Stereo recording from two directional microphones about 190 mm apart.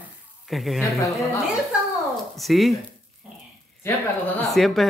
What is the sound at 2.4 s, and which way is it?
Speech, centre (ahead or behind).